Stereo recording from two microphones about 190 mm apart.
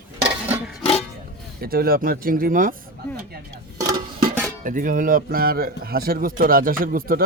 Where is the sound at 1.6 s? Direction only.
50° right (ahead or behind).